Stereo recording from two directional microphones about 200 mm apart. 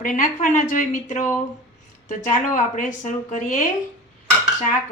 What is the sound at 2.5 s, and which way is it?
Speech, 40° left (ahead or behind).